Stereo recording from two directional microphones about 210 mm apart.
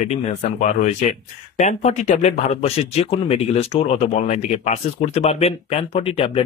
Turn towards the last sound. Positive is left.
turn(degrees=30)  # may be behind; listen again after turning